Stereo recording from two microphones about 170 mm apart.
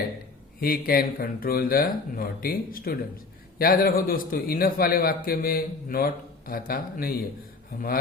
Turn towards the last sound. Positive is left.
turn(degrees=65)  # may be behind; listen again after turning